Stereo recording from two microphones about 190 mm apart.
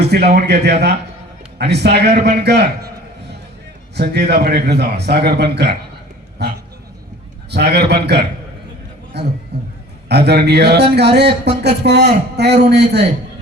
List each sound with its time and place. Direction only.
0.0 s a sound: 60° right (ahead or behind)
0.3 s speech: 60° right (ahead or behind)
3.9 s speech: 60° right (ahead or behind)